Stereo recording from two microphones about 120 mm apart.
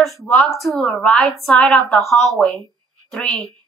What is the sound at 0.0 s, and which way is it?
Speech, centre (ahead or behind).